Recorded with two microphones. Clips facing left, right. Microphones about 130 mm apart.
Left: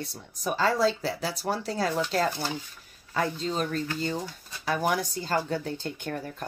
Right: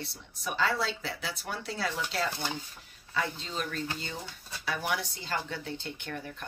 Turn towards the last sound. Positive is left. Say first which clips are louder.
# left 5 dB
turn(degrees=40)  # may be behind; listen again after turning